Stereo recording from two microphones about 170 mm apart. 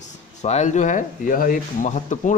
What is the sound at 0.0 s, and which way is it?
A man's voice, 40° left (ahead or behind).